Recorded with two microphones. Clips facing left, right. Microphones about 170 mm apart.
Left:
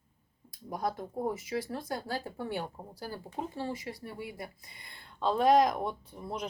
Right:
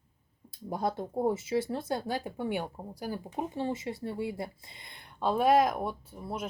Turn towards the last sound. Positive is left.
turn(degrees=-5)  # may be behind; listen again after turning